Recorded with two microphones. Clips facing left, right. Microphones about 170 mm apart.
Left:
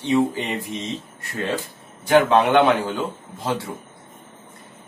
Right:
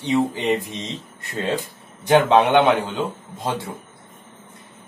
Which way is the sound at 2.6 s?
20° right (ahead or behind).